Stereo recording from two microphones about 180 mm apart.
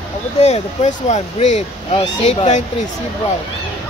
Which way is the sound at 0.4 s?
40° left (ahead or behind).